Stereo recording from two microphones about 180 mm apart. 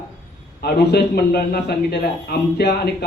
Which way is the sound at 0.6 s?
65° left (ahead or behind).